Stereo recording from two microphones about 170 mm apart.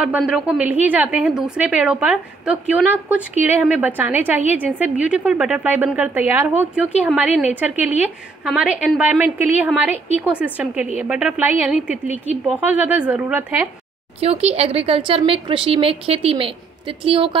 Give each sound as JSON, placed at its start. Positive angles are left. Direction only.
{"t": 0.0, "sound": "a woman's voice", "side_deg": -5}
{"t": 7.7, "sound": "a woman's voice", "side_deg": 40}
{"t": 8.0, "sound": "a woman's voice", "side_deg": -5}
{"t": 14.2, "sound": "a woman's voice", "side_deg": -35}